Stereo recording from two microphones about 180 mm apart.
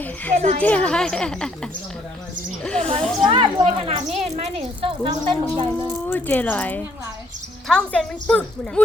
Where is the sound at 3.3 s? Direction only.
30° right (ahead or behind).